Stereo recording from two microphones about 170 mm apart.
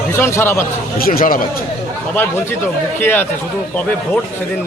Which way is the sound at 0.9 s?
60° left (ahead or behind).